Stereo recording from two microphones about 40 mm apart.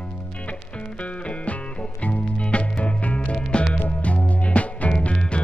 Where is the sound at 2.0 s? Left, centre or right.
Left.